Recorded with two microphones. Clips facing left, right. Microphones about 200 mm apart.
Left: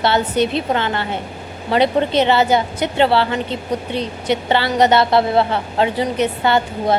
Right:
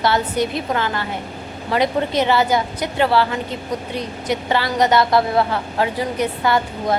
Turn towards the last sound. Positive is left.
turn(degrees=25)  # may be behind; listen again after turning